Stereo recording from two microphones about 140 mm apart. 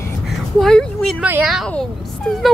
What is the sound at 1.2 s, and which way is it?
Speech, 10° right (ahead or behind).